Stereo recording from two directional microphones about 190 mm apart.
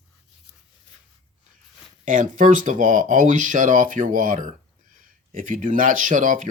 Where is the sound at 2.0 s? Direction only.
40° right (ahead or behind).